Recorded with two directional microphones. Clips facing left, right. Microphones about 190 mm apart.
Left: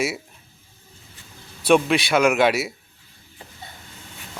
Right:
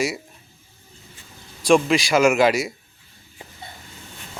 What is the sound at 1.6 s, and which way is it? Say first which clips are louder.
Speech: right 1 dB; 5° left (ahead or behind).